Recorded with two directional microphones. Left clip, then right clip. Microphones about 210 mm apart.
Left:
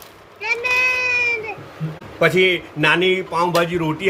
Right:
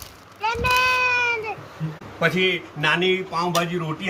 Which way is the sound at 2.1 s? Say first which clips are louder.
Left 5 dB; 55° left (ahead or behind).